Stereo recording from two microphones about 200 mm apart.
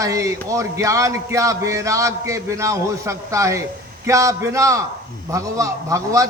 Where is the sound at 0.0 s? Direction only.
15° right (ahead or behind).